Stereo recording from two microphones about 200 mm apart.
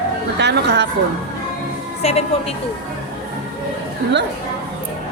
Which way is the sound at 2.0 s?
30° left (ahead or behind).